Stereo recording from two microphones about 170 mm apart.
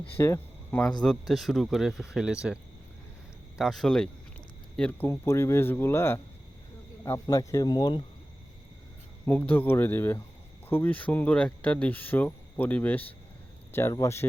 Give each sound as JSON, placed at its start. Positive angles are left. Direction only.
{"t": 0.0, "sound": "speech", "side_deg": 10}
{"t": 1.3, "sound": "speech", "side_deg": 0}
{"t": 3.6, "sound": "speech", "side_deg": 0}
{"t": 9.2, "sound": "speech", "side_deg": 10}